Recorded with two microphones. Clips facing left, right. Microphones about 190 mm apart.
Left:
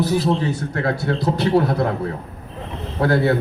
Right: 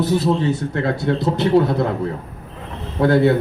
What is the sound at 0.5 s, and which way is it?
A man's voice, 20° right (ahead or behind).